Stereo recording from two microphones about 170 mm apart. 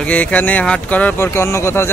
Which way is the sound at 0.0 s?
10° left (ahead or behind).